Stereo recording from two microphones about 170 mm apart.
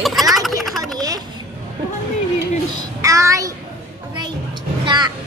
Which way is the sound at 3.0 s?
20° right (ahead or behind).